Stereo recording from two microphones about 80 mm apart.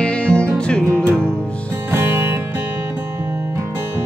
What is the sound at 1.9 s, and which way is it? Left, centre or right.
Music, right.